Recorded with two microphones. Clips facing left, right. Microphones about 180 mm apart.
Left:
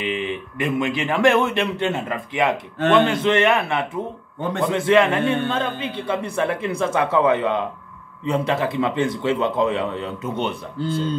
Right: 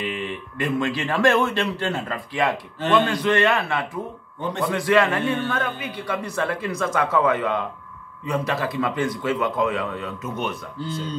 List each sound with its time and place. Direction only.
0.0 s a man's voice: 20° left (ahead or behind)